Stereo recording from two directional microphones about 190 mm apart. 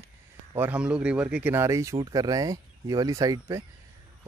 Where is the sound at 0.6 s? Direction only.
5° right (ahead or behind).